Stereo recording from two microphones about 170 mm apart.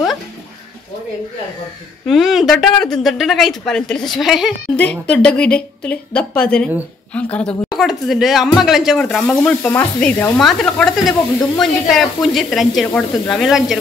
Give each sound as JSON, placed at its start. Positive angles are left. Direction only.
{"t": 2.0, "sound": "speech", "side_deg": 0}
{"t": 10.4, "sound": "speech", "side_deg": 0}